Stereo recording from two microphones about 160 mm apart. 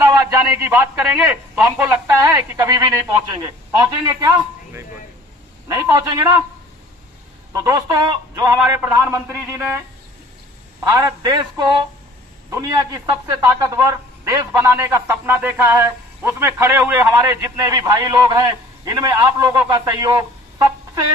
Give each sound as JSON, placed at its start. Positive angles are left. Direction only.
{"t": 0.0, "sound": "a sound", "side_deg": -20}
{"t": 1.1, "sound": "speech", "side_deg": -10}
{"t": 2.0, "sound": "speech", "side_deg": -20}
{"t": 5.7, "sound": "speech", "side_deg": -20}
{"t": 7.5, "sound": "a man's voice", "side_deg": -20}